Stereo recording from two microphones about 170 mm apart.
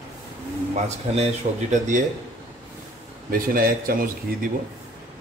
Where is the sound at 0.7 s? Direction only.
40° right (ahead or behind).